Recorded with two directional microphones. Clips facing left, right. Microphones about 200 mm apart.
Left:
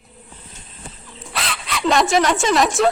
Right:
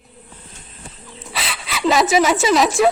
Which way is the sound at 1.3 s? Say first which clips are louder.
Left 1 dB; centre (ahead or behind).